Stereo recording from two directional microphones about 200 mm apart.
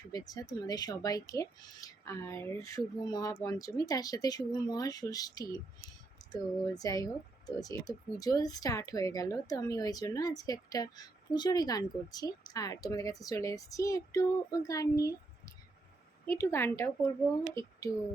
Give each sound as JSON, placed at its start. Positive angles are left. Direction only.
{"t": 0.1, "sound": "speech", "side_deg": 20}